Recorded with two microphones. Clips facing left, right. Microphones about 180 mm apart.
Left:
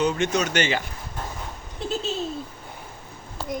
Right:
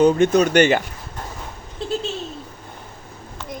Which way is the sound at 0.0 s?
50° right (ahead or behind).